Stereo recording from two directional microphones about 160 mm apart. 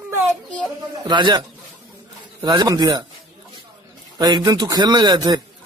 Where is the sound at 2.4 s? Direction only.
25° right (ahead or behind).